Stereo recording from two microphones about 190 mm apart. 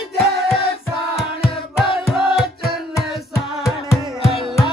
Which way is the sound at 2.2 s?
Centre (ahead or behind).